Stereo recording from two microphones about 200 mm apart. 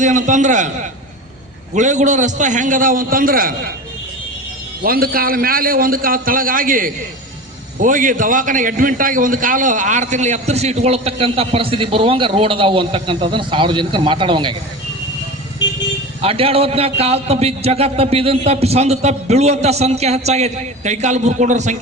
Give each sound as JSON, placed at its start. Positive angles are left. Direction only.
{"t": 0.0, "sound": "a man's voice", "side_deg": -40}
{"t": 4.8, "sound": "a man's voice", "side_deg": -45}
{"t": 16.2, "sound": "a man's voice", "side_deg": -30}